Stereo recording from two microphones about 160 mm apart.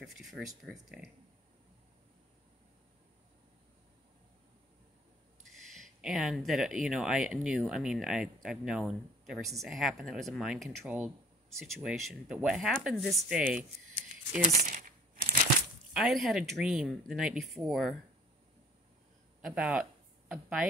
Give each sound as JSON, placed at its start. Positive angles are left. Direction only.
{"t": 0.0, "sound": "speech", "side_deg": 0}
{"t": 5.4, "sound": "speech", "side_deg": 0}
{"t": 14.4, "sound": "crumpling", "side_deg": -60}
{"t": 15.9, "sound": "speech", "side_deg": 0}
{"t": 19.4, "sound": "speech", "side_deg": -5}